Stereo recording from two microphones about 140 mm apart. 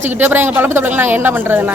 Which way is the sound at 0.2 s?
15° right (ahead or behind).